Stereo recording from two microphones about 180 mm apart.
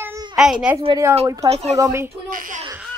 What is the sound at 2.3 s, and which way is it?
Speech, 50° right (ahead or behind).